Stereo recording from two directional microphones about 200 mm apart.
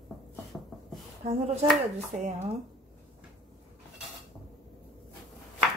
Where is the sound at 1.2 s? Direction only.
30° right (ahead or behind).